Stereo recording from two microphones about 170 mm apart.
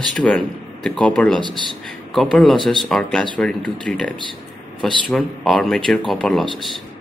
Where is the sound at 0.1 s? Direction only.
5° left (ahead or behind).